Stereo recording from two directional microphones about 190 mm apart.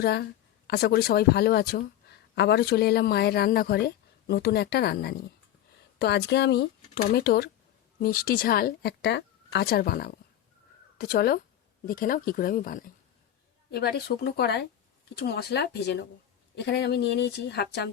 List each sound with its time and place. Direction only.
0.0 s a woman's voice: 60° left (ahead or behind)